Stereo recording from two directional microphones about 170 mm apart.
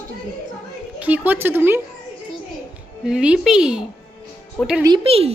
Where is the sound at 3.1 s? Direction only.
5° right (ahead or behind).